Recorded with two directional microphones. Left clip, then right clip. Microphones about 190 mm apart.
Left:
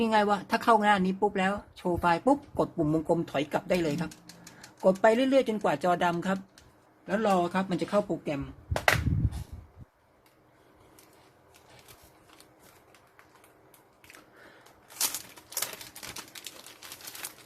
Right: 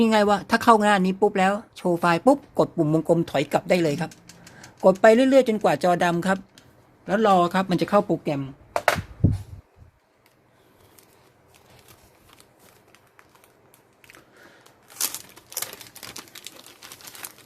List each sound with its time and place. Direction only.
0.0 s speech: 40° right (ahead or behind)
7.1 s speech: 50° right (ahead or behind)
14.6 s typewriter: 40° right (ahead or behind)